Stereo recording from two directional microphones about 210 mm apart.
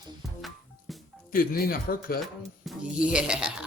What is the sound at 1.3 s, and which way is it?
Speech, 45° left (ahead or behind).